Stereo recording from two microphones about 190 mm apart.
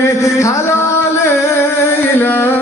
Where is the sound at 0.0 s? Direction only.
15° left (ahead or behind).